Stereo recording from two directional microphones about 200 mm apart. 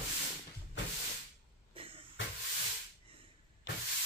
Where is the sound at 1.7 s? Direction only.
25° right (ahead or behind).